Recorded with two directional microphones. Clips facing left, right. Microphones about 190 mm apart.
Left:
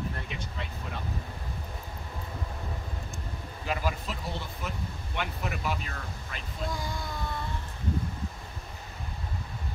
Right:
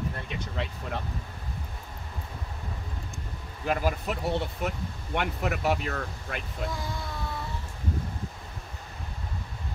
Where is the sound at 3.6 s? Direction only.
50° right (ahead or behind); by 6.4 s 65° right (ahead or behind).